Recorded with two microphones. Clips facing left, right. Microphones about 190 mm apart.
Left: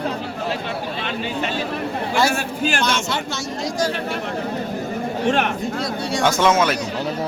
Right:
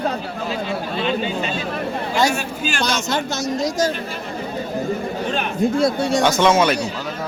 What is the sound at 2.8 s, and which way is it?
Speech, 40° right (ahead or behind).